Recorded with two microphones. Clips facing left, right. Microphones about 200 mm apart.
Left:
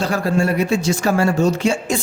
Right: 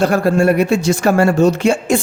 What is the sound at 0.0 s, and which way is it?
Speech, 55° right (ahead or behind).